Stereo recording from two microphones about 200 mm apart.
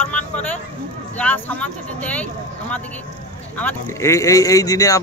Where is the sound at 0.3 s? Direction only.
5° left (ahead or behind).